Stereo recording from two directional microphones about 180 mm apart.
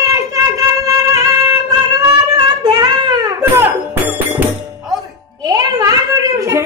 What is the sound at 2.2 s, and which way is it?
Music, 20° right (ahead or behind).